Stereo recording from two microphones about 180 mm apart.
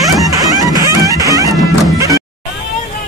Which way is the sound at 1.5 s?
Centre (ahead or behind).